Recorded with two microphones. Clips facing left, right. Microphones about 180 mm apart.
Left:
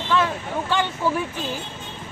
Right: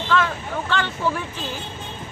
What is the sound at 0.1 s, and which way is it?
Speech, 10° left (ahead or behind).